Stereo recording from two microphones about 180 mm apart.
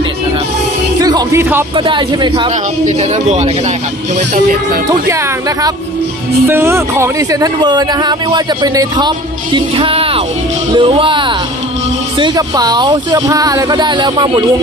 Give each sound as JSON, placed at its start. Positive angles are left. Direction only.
{"t": 1.0, "sound": "speech", "side_deg": -20}
{"t": 1.7, "sound": "speech", "side_deg": -25}
{"t": 2.8, "sound": "speech", "side_deg": -40}
{"t": 4.9, "sound": "speech", "side_deg": -15}